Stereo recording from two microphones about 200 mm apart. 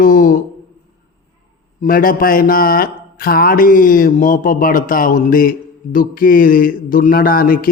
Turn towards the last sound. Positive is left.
turn(degrees=45)  # may be behind; listen again after turning